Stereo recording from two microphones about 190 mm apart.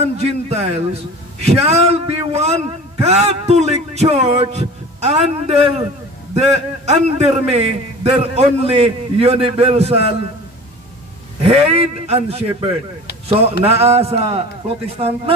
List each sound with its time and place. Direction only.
0.0 s a man's voice: 35° right (ahead or behind)
6.4 s a man's voice: 35° right (ahead or behind)
11.4 s a man's voice: 30° right (ahead or behind)